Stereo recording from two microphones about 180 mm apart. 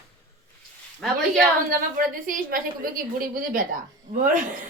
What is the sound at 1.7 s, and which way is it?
Speech, 50° right (ahead or behind).